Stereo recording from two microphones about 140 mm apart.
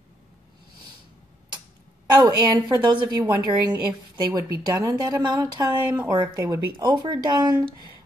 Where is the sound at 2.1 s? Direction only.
30° right (ahead or behind).